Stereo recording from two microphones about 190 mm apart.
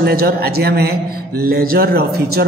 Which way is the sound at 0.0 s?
55° right (ahead or behind).